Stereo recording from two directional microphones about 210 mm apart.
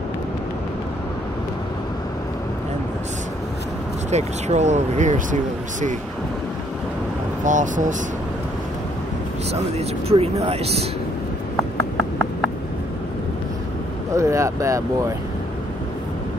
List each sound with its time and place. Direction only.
4.1 s speech: 35° right (ahead or behind)
7.4 s speech: 35° right (ahead or behind)
9.5 s speech: 30° right (ahead or behind)
14.1 s speech: 15° right (ahead or behind)